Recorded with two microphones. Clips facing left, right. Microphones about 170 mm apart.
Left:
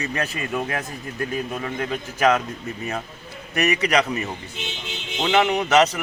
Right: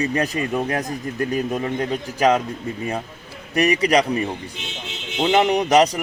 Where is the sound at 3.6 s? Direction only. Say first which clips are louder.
Right 3 dB; 35° right (ahead or behind).